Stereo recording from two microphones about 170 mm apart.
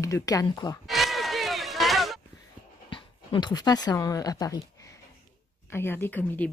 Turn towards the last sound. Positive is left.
turn(degrees=10)  # may be behind; listen again after turning